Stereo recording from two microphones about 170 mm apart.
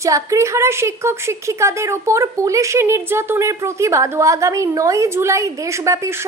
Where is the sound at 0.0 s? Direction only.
20° right (ahead or behind).